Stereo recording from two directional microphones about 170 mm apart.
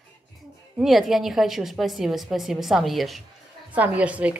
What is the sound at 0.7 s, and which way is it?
A woman's voice, centre (ahead or behind).